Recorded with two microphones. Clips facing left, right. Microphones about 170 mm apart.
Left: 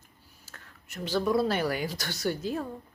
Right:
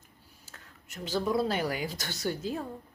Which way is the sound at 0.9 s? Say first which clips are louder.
Left 3 dB; 20° right (ahead or behind).